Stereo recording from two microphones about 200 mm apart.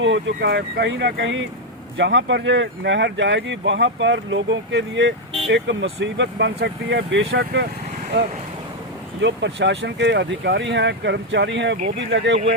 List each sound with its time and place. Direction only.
0.0 s speech: 65° right (ahead or behind)